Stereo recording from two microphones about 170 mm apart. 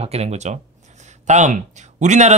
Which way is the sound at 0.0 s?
40° right (ahead or behind).